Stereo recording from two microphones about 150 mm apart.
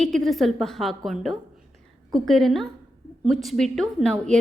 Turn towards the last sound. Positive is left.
turn(degrees=5)  # may be behind; listen again after turning